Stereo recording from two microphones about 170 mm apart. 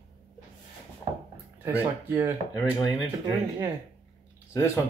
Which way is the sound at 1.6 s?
15° right (ahead or behind).